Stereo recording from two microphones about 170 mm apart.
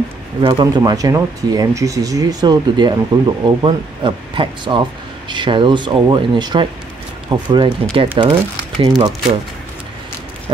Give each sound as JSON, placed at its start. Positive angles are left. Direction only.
{"t": 0.4, "sound": "speech", "side_deg": -25}